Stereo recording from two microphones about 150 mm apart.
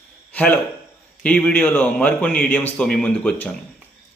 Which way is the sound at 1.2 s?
5° left (ahead or behind).